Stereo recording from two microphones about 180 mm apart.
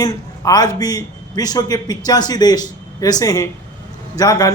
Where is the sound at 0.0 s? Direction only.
20° left (ahead or behind).